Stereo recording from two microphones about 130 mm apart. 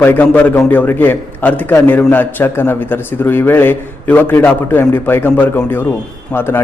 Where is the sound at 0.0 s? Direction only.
15° left (ahead or behind).